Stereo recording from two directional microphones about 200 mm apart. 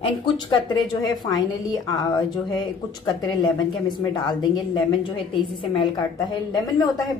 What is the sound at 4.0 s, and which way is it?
Speech, 20° left (ahead or behind).